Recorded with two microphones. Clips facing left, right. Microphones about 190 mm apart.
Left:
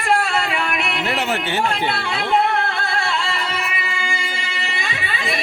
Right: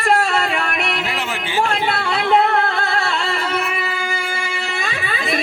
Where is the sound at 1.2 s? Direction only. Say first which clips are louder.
Left 1 dB; 65° left (ahead or behind).